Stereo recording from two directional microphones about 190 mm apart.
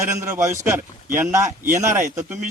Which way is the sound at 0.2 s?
15° right (ahead or behind).